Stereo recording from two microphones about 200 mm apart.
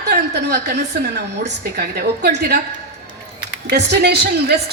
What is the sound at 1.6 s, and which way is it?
Speech, 55° right (ahead or behind).